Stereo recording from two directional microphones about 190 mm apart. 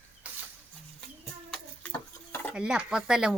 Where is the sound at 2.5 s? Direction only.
5° right (ahead or behind).